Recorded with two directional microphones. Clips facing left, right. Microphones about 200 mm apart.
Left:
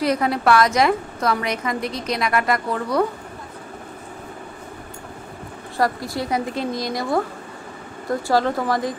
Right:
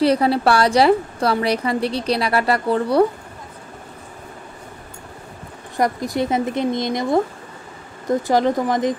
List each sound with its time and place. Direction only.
0.0 s a woman's voice: 30° right (ahead or behind)
5.8 s speech: 20° right (ahead or behind)